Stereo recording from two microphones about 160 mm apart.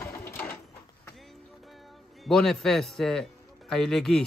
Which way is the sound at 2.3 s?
5° left (ahead or behind).